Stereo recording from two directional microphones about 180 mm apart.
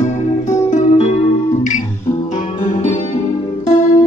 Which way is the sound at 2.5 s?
40° left (ahead or behind).